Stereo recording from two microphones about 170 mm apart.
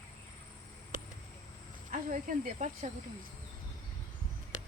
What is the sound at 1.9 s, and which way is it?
Speech, 50° right (ahead or behind).